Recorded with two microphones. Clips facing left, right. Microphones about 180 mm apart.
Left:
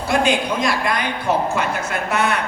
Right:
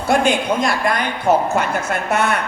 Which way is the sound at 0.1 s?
50° right (ahead or behind).